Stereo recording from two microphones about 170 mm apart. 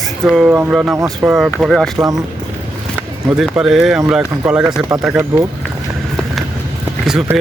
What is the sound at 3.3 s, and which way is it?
Speech, 5° right (ahead or behind).